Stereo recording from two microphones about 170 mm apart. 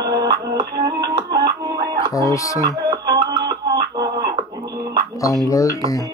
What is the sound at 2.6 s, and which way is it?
Music, 20° right (ahead or behind).